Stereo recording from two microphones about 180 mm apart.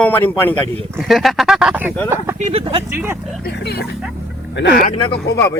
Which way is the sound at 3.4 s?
65° left (ahead or behind).